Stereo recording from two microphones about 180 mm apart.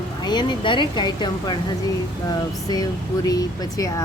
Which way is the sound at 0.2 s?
25° left (ahead or behind).